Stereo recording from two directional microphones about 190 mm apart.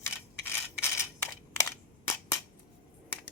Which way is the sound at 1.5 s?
15° left (ahead or behind).